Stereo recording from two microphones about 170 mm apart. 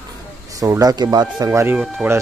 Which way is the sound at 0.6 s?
20° right (ahead or behind).